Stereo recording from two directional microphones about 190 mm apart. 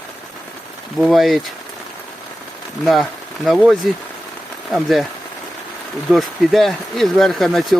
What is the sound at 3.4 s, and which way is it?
Speech, centre (ahead or behind).